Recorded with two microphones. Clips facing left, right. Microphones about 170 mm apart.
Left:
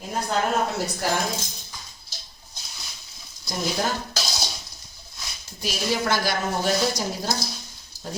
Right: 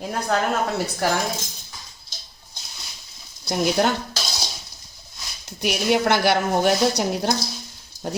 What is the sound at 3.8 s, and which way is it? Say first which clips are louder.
Speech: right 6 dB; 65° right (ahead or behind).